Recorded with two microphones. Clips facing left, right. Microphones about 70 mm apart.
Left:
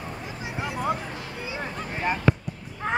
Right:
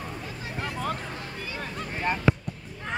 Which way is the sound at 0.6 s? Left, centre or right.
Centre.